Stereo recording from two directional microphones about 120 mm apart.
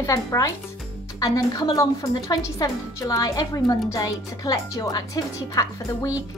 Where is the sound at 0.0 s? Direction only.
25° left (ahead or behind).